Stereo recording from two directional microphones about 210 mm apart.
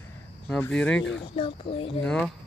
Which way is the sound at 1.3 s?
25° left (ahead or behind).